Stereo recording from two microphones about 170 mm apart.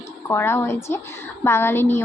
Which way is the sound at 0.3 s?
15° left (ahead or behind).